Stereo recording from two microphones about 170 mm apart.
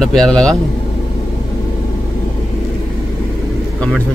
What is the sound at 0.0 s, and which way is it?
Speech, 5° left (ahead or behind).